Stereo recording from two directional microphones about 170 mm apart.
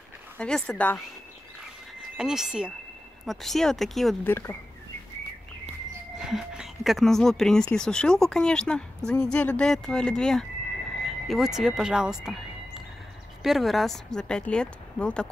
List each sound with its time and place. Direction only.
0.4 s speech: 5° left (ahead or behind)
4.3 s speech: 10° left (ahead or behind)
6.1 s speech: 5° right (ahead or behind)